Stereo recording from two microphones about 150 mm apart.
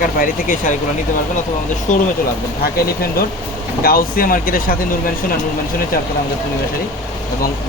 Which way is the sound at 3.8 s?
75° left (ahead or behind).